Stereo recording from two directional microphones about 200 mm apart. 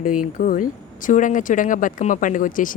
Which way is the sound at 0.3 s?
45° left (ahead or behind).